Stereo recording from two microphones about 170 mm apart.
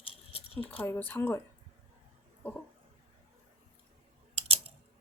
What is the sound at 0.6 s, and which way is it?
Speech, 10° left (ahead or behind).